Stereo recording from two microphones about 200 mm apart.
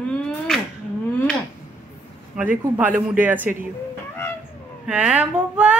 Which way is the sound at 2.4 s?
5° right (ahead or behind).